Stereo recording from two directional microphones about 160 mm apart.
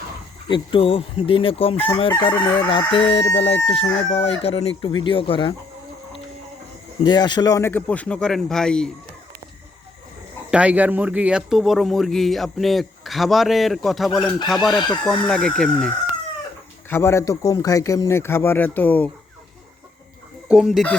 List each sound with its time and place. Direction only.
0.4 s crowing: 30° left (ahead or behind)
7.0 s speech: 25° left (ahead or behind); by 8.9 s 5° left (ahead or behind)
10.5 s speech: 10° right (ahead or behind)
14.8 s a man's voice: 25° left (ahead or behind)
15.3 s speech: 5° left (ahead or behind)
16.9 s a man's voice: 15° left (ahead or behind)
20.5 s speech: centre (ahead or behind)